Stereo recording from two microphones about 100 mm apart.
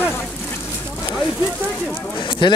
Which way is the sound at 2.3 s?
55° left (ahead or behind).